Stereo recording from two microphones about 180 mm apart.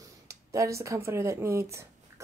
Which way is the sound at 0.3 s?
15° right (ahead or behind).